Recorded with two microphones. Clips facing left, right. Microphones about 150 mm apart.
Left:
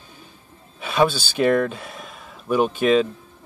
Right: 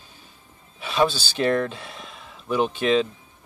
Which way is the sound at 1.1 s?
50° left (ahead or behind).